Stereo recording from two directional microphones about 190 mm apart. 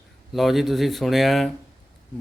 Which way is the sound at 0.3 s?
Centre (ahead or behind).